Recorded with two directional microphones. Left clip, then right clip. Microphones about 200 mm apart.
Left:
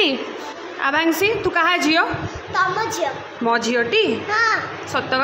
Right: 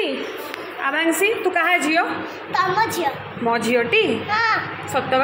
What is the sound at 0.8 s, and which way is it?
A woman's voice, 10° left (ahead or behind).